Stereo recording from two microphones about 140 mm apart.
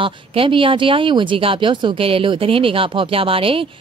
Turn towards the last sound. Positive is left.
turn(degrees=-40)  # may be behind; listen again after turning